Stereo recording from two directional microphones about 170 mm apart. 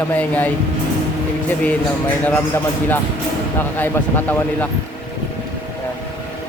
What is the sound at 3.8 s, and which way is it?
Speech, 10° left (ahead or behind).